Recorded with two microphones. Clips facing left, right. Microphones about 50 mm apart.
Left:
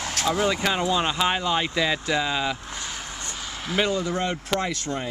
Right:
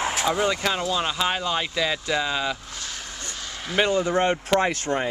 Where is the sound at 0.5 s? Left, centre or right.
Centre.